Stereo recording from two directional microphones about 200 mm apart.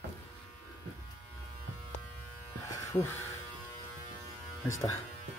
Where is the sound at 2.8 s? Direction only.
10° left (ahead or behind).